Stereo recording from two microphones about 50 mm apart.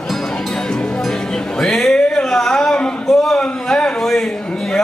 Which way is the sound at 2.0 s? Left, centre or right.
Centre.